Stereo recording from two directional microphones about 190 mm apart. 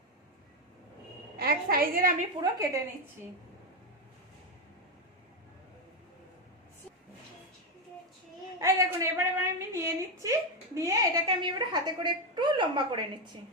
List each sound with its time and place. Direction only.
1.4 s a woman's voice: 50° right (ahead or behind)
2.4 s a woman's voice: 20° right (ahead or behind)
8.6 s a woman's voice: 15° right (ahead or behind)